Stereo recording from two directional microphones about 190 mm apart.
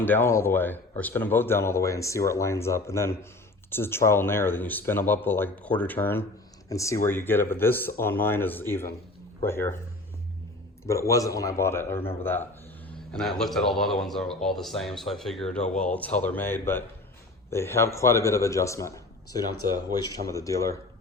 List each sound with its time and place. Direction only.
0.0 s a man's voice: 10° left (ahead or behind)
10.8 s a man's voice: 15° left (ahead or behind)